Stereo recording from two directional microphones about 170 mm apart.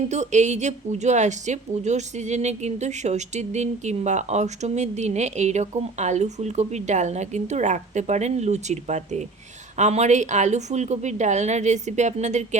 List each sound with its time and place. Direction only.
0.1 s a woman's voice: 45° right (ahead or behind)